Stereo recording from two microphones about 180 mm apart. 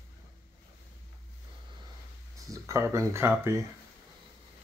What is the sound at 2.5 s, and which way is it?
Speech, 15° right (ahead or behind).